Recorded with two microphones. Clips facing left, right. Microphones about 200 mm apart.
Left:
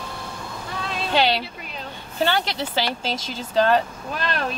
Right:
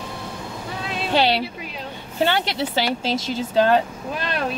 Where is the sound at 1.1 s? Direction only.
35° right (ahead or behind).